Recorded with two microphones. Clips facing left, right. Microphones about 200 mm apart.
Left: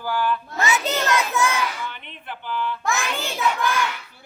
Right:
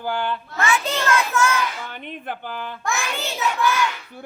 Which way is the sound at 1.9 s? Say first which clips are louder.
Right 6 dB; 45° right (ahead or behind).